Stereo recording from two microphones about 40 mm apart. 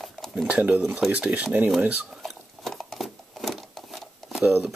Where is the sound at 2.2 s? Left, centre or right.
Centre.